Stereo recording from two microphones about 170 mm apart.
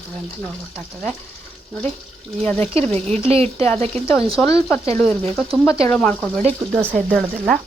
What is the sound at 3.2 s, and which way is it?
Speech, 35° right (ahead or behind).